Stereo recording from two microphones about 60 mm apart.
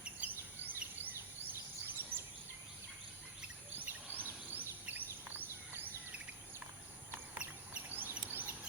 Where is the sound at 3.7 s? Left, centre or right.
Right.